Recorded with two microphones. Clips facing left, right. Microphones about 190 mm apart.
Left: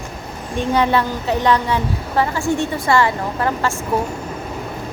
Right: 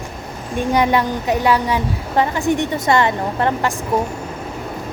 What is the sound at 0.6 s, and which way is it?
A woman's voice, 15° right (ahead or behind).